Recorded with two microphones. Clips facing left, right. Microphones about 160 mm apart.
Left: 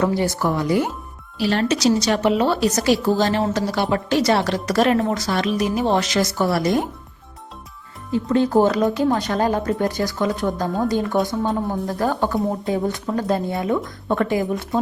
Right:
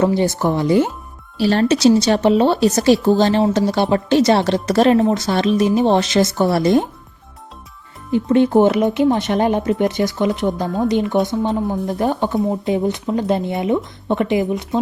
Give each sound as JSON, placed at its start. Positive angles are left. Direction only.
{"t": 0.0, "sound": "a woman's voice", "side_deg": -25}
{"t": 8.3, "sound": "a woman's voice", "side_deg": -25}
{"t": 14.4, "sound": "speech", "side_deg": 0}